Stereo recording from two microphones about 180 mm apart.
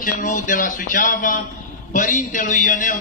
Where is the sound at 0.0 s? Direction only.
45° left (ahead or behind).